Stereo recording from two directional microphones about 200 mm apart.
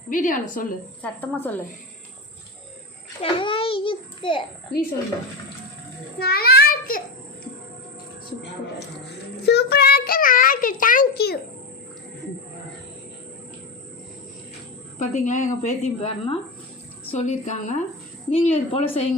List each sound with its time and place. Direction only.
0.1 s a woman's voice: 40° left (ahead or behind)
1.0 s a woman's voice: 10° left (ahead or behind)
3.2 s a child's voice: 25° left (ahead or behind)
6.1 s child singing: 50° left (ahead or behind)
9.5 s a child's voice: 55° left (ahead or behind)
14.9 s a woman's voice: 35° left (ahead or behind)